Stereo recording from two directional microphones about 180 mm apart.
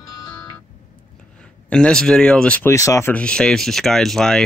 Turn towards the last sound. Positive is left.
turn(degrees=5)  # may be behind; listen again after turning